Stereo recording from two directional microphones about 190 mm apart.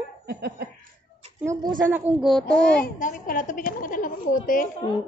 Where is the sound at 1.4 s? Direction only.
15° right (ahead or behind).